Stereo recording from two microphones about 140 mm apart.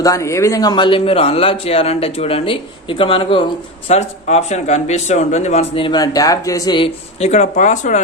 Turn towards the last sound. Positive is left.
turn(degrees=60)  # may be behind; listen again after turning